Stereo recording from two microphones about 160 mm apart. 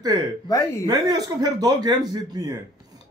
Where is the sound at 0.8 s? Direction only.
25° right (ahead or behind).